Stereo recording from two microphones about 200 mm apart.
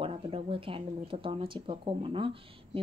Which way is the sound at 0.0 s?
25° right (ahead or behind).